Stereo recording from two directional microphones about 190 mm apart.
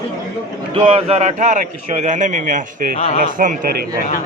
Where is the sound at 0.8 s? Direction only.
35° right (ahead or behind); by 3.8 s 50° right (ahead or behind).